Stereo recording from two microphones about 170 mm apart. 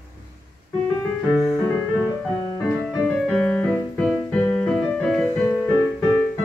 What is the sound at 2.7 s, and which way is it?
Music, 5° left (ahead or behind).